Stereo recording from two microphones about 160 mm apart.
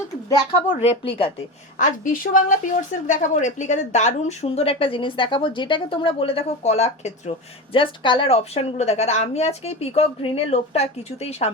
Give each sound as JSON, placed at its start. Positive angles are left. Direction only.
{"t": 0.8, "sound": "a woman's voice", "side_deg": 35}
{"t": 1.8, "sound": "a woman's voice", "side_deg": 55}